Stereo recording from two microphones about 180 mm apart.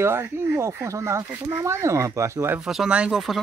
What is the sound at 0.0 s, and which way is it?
Speech, 15° right (ahead or behind).